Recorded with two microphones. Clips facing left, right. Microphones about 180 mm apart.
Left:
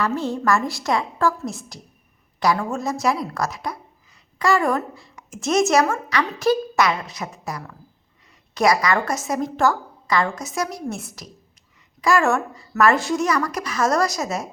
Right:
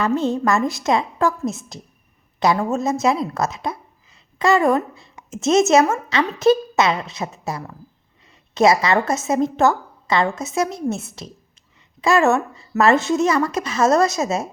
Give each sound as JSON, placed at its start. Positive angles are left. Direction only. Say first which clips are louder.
{"t": 0.0, "sound": "a woman's voice", "louder": "right 3 dB", "side_deg": -20}